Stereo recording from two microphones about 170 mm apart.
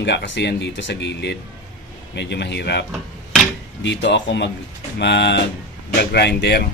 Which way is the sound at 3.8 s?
90° left.